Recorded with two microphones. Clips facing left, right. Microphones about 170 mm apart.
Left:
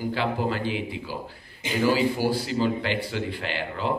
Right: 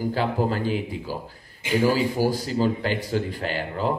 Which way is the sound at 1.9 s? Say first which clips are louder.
Left 1 dB; 45° right (ahead or behind).